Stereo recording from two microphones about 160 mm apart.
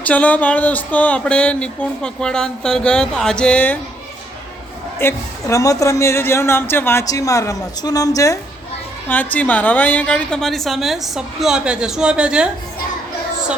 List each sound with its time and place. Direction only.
0.0 s speech: 10° left (ahead or behind)
4.9 s a woman's voice: 15° left (ahead or behind)
9.0 s a woman's voice: 10° left (ahead or behind); by 12.5 s 5° right (ahead or behind)